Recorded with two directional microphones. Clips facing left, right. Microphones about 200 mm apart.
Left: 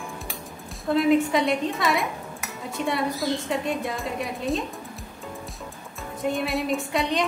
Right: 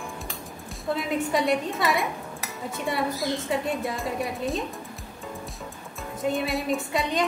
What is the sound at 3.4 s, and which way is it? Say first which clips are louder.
A woman's voice: even; centre (ahead or behind).